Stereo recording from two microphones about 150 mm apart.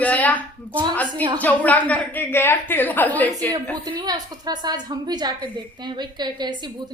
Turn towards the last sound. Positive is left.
turn(degrees=-30)  # may be behind; listen again after turning